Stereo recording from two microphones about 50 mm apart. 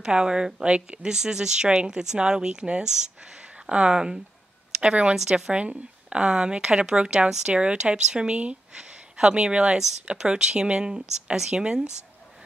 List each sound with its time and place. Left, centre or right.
0.0 s a woman's voice: centre